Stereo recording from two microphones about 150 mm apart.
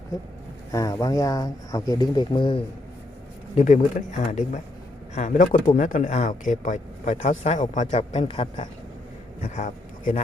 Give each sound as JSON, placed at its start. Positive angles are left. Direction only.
{"t": 0.7, "sound": "speech", "side_deg": 20}
{"t": 3.6, "sound": "speech", "side_deg": 55}
{"t": 8.1, "sound": "a man's voice", "side_deg": 40}
{"t": 9.4, "sound": "speech", "side_deg": 55}